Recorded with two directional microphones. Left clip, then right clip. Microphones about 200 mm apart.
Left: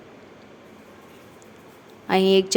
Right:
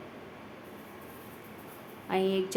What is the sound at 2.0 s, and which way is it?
Speech, 45° left (ahead or behind).